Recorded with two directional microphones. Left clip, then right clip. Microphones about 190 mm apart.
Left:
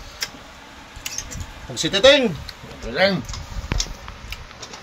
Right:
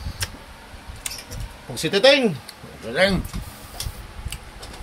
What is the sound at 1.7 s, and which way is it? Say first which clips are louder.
Speech: left 2 dB; 30° right (ahead or behind).